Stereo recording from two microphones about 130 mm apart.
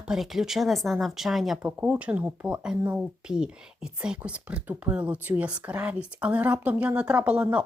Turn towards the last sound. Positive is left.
turn(degrees=-10)  # may be behind; listen again after turning